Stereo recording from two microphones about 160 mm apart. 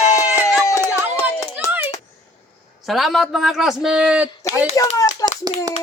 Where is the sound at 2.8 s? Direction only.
Centre (ahead or behind).